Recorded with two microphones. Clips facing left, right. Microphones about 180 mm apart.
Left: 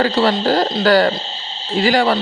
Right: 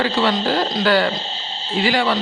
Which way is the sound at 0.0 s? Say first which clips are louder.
Left 3 dB; 40° left (ahead or behind).